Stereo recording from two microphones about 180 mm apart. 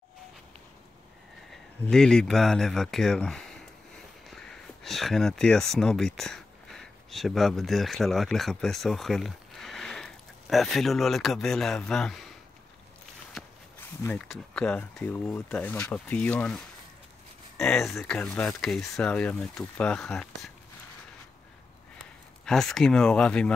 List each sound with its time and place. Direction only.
1.9 s speech: 5° left (ahead or behind)
4.3 s a sound: centre (ahead or behind)
5.8 s speech: 5° left (ahead or behind)
14.0 s speech: 5° left (ahead or behind)
22.4 s speech: centre (ahead or behind)